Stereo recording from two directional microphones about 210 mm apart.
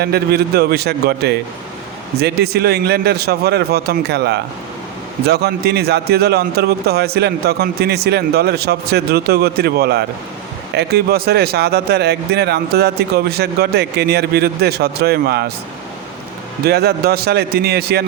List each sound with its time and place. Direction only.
0.0 s a man's voice: 50° right (ahead or behind)
16.6 s a man's voice: 50° right (ahead or behind)